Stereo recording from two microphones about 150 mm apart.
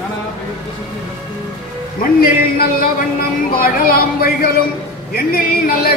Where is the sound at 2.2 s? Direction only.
75° left (ahead or behind).